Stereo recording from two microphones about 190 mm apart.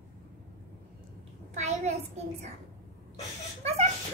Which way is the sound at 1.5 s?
35° right (ahead or behind).